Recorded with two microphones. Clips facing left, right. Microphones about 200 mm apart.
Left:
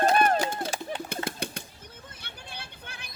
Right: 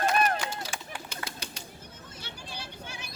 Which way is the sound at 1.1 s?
55° left (ahead or behind).